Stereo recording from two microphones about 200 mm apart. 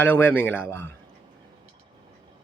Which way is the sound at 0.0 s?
10° left (ahead or behind).